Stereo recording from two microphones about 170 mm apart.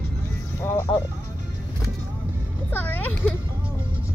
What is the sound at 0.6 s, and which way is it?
Music, 15° left (ahead or behind).